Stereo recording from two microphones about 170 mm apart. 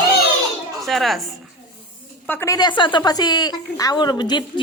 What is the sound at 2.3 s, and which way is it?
A woman's voice, 15° left (ahead or behind).